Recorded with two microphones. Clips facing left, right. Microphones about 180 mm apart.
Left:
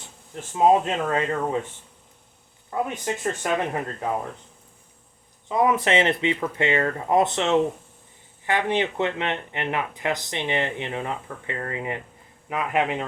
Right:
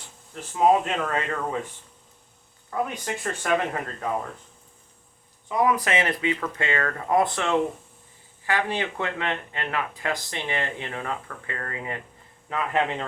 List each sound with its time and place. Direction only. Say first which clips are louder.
0.6 s speech: left 2 dB; 25° left (ahead or behind)
2.6 s speech: left 2 dB; 20° left (ahead or behind)
5.5 s a man's voice: left 2 dB; 25° left (ahead or behind)